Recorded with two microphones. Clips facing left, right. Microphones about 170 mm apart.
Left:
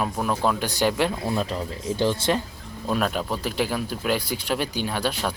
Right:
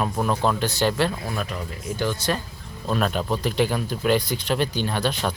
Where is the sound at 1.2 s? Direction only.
25° left (ahead or behind).